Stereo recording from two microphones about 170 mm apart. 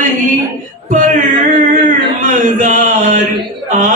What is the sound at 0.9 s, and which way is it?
Music, 50° right (ahead or behind).